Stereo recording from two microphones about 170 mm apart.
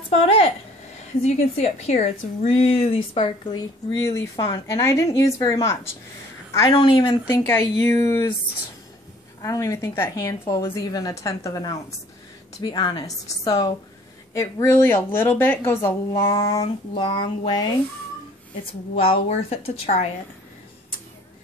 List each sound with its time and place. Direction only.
0.1 s a woman's voice: 35° left (ahead or behind)
3.5 s a woman's voice: 20° left (ahead or behind)
6.7 s a woman's voice: 30° left (ahead or behind)
9.4 s a woman's voice: 20° left (ahead or behind)
16.2 s a woman's voice: 30° left (ahead or behind)
18.9 s a woman's voice: 35° left (ahead or behind)